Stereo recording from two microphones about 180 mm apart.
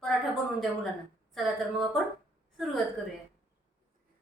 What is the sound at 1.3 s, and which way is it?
Speech, centre (ahead or behind).